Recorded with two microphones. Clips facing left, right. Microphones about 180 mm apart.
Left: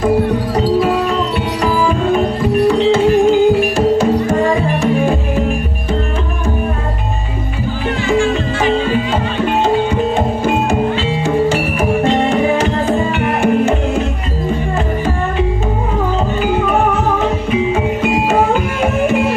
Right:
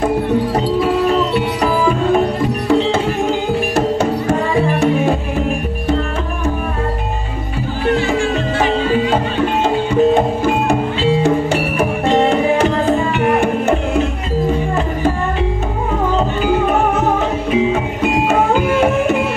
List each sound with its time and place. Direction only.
3.7 s music: 65° right (ahead or behind)